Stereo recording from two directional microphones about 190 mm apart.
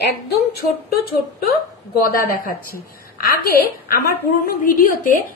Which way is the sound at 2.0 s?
50° left (ahead or behind).